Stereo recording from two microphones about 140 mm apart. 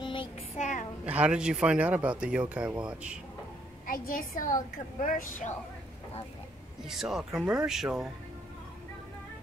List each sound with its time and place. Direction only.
0.0 s child singing: 35° left (ahead or behind)
0.6 s a sound: 60° left (ahead or behind)
1.0 s speech: 10° right (ahead or behind)
3.8 s a woman's voice: 90° left; by 5.5 s 75° left (ahead or behind)
6.9 s speech: 5° right (ahead or behind)